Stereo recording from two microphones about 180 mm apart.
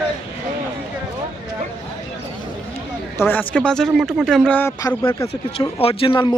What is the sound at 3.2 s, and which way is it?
Speech, 10° left (ahead or behind).